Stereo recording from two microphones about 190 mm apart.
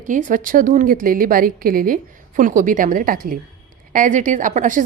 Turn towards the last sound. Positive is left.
turn(degrees=-40)  # may be behind; listen again after turning